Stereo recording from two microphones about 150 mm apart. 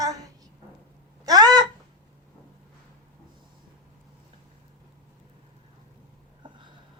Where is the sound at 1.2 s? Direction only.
25° right (ahead or behind).